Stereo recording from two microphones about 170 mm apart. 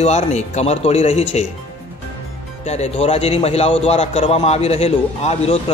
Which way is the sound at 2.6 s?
40° left (ahead or behind).